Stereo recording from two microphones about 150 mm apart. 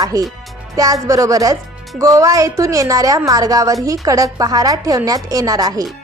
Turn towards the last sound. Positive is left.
turn(degrees=-25)  # may be behind; listen again after turning